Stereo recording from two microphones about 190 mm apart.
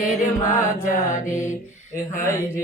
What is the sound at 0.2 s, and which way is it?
Mantra, 40° left (ahead or behind).